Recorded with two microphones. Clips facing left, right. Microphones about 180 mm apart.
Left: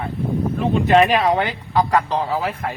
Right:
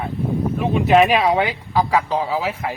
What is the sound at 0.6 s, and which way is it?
Speech, 5° right (ahead or behind).